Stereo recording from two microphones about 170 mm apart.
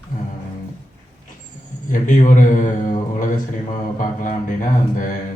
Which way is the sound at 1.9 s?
50° left (ahead or behind).